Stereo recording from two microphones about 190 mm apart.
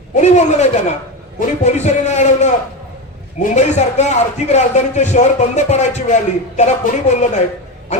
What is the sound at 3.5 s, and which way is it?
A man's voice, 35° left (ahead or behind).